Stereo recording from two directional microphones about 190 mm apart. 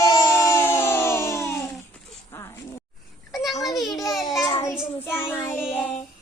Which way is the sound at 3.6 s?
Centre (ahead or behind).